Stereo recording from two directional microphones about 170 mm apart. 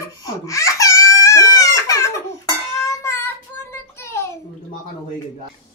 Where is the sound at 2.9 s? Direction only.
15° left (ahead or behind).